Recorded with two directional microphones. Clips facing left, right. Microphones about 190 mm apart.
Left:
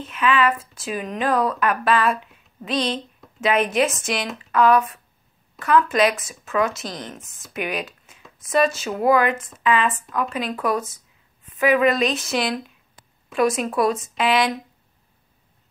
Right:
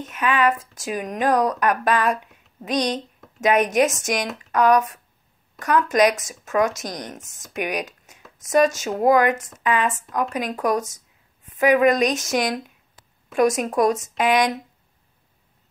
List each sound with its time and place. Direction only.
0.0 s speech: 45° right (ahead or behind)